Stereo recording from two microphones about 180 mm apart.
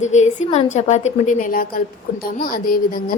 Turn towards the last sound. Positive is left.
turn(degrees=50)  # may be behind; listen again after turning